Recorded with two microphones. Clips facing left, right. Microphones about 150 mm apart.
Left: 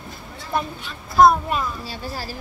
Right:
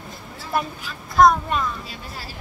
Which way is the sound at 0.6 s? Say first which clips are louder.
Even; centre (ahead or behind).